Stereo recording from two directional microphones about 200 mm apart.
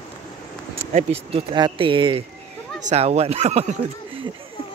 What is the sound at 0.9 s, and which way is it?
Speech, 35° right (ahead or behind).